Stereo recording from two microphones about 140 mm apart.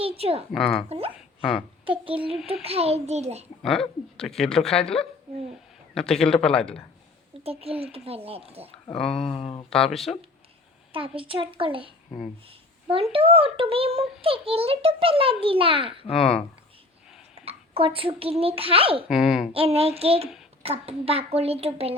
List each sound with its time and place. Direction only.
0.0 s a woman's voice: 45° right (ahead or behind)
0.5 s speech: 5° left (ahead or behind)
0.9 s a child's voice: 45° right (ahead or behind)
3.6 s speech: centre (ahead or behind)
7.4 s a child's voice: 45° right (ahead or behind)
9.1 s speech: 40° left (ahead or behind)
9.6 s speech: 5° left (ahead or behind)
10.9 s a child's voice: 40° right (ahead or behind)
12.9 s a child's voice: 40° right (ahead or behind)
16.1 s speech: centre (ahead or behind)
17.3 s speech: 45° right (ahead or behind)
19.0 s speech: 5° right (ahead or behind)
19.5 s a child's voice: 45° right (ahead or behind)